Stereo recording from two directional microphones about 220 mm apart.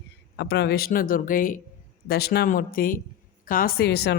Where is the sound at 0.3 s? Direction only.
50° left (ahead or behind).